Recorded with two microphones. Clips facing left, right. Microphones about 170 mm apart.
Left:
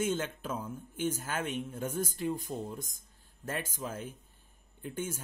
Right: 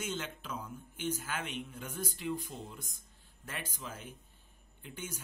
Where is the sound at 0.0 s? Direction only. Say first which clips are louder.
Left 7 dB; 50° left (ahead or behind).